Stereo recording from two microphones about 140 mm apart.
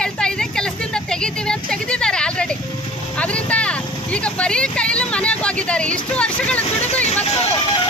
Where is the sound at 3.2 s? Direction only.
10° left (ahead or behind).